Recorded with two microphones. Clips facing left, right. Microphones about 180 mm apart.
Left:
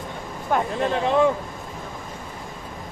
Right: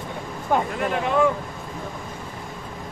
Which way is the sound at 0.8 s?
30° left (ahead or behind).